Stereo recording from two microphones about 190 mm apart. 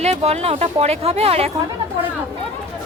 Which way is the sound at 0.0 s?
35° right (ahead or behind).